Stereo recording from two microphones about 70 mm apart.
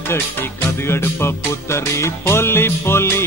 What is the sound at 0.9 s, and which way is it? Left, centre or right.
Music, left.